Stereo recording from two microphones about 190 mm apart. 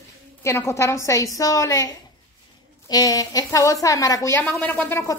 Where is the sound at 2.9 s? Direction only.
20° left (ahead or behind).